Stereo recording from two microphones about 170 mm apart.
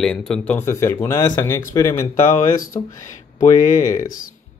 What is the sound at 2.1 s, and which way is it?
Speech, 45° left (ahead or behind).